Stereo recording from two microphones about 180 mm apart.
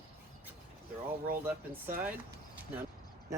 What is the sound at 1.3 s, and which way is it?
Speech, 10° right (ahead or behind).